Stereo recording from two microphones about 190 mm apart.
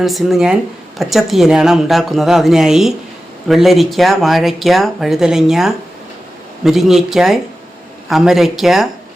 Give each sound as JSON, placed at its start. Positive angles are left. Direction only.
{"t": 0.0, "sound": "speech", "side_deg": 0}